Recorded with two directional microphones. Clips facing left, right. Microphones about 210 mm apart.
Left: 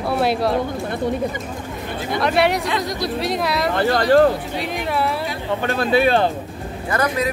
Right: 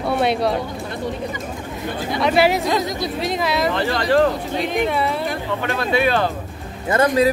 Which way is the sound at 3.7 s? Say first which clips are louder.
Left 6 dB; 45° left (ahead or behind).